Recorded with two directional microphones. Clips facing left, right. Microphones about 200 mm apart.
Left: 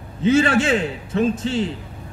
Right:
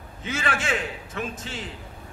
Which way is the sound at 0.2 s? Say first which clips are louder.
Left 13 dB; 30° left (ahead or behind).